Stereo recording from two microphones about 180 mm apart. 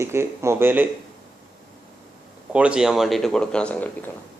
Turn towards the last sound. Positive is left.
turn(degrees=10)  # may be behind; listen again after turning